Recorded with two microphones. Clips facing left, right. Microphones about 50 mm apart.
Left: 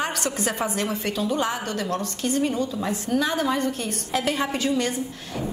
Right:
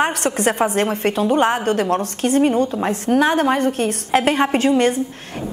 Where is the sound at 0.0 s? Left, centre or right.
Right.